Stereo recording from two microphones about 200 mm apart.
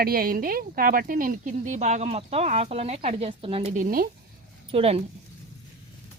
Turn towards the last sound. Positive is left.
turn(degrees=-30)  # may be behind; listen again after turning